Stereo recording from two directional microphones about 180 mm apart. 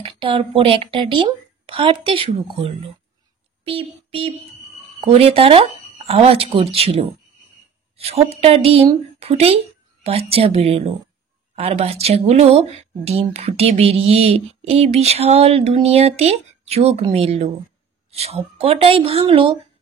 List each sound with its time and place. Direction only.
0.0 s a woman's voice: 30° right (ahead or behind)